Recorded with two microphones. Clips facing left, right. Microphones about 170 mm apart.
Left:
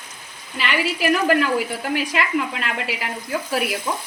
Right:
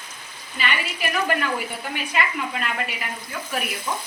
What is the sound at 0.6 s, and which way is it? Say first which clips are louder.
A woman's voice: left 5 dB; 90° left.